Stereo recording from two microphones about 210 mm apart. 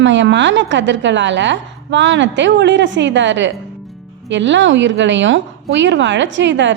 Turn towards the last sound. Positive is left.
turn(degrees=-60)  # may be behind; listen again after turning